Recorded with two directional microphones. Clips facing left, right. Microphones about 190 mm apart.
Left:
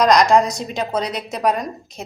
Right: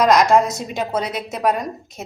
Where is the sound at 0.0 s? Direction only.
5° right (ahead or behind).